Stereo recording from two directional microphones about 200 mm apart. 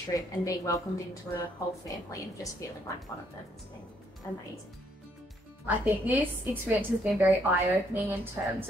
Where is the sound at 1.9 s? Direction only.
15° left (ahead or behind).